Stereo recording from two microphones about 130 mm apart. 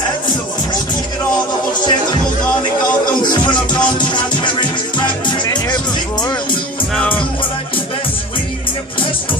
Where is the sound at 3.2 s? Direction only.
35° left (ahead or behind).